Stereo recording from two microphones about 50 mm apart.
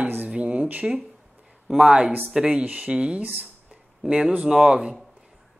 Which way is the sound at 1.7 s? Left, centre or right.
Centre.